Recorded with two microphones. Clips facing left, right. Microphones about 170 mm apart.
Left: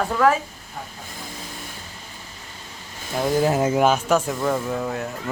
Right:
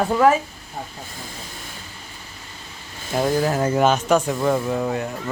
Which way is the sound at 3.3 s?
25° left (ahead or behind).